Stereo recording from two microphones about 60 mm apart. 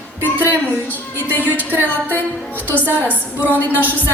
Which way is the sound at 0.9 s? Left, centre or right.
Left.